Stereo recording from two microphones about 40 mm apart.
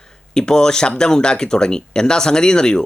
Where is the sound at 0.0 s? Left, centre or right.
Centre.